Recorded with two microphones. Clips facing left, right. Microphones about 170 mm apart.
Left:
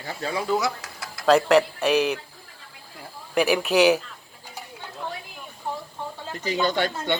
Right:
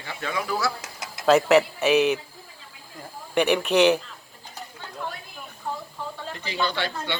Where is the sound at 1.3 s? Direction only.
5° right (ahead or behind).